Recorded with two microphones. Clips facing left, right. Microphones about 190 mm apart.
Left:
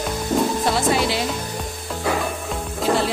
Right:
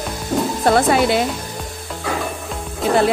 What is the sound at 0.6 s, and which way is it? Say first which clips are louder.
Speech: right 5 dB; 55° right (ahead or behind).